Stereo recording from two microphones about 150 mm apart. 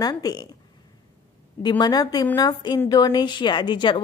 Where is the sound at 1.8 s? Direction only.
25° left (ahead or behind).